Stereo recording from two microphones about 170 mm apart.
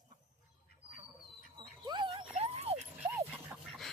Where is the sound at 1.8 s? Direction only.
30° right (ahead or behind).